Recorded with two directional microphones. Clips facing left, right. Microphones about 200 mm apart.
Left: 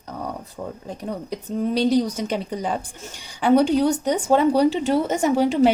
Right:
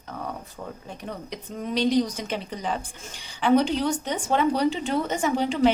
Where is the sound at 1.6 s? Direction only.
35° left (ahead or behind).